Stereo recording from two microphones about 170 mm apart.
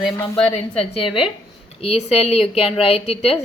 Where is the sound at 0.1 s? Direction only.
30° left (ahead or behind).